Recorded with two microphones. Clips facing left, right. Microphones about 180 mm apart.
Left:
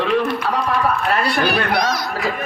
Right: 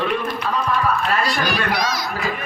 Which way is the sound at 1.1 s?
60° left (ahead or behind).